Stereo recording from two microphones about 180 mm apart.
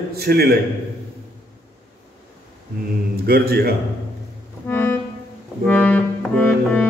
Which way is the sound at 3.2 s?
60° right (ahead or behind).